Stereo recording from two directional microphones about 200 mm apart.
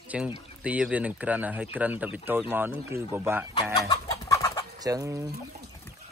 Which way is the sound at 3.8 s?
15° left (ahead or behind).